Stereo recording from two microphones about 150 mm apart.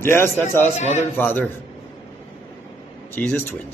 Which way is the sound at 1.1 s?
10° left (ahead or behind).